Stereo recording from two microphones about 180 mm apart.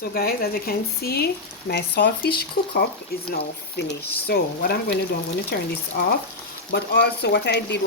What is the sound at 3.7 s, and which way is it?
Speech, 65° left (ahead or behind).